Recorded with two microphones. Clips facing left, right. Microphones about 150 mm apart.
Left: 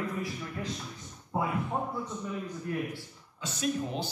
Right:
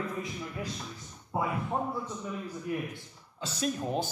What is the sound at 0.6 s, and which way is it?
Speech, 15° right (ahead or behind).